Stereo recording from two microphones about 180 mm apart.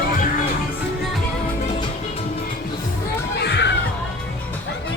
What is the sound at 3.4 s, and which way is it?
Children playing, 70° left (ahead or behind).